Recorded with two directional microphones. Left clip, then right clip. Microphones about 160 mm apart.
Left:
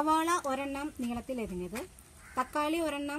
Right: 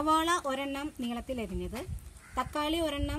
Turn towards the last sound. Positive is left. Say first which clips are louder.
# right 1 dB
turn(degrees=-10)  # may be behind; listen again after turning